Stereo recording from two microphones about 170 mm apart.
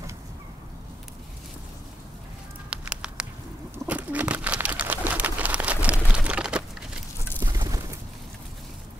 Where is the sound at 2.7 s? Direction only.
5° right (ahead or behind).